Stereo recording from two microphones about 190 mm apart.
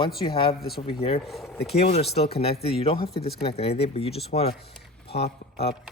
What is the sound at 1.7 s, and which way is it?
Speech, 35° left (ahead or behind).